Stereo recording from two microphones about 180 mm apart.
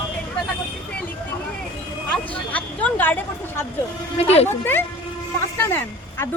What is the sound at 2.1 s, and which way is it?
A woman's voice, 10° left (ahead or behind).